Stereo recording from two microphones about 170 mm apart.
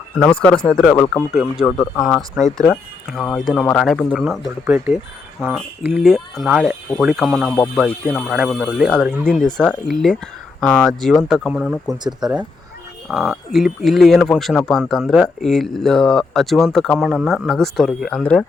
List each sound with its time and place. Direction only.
0.2 s speech: 10° left (ahead or behind)
11.9 s speech: 25° right (ahead or behind)
13.1 s speech: centre (ahead or behind)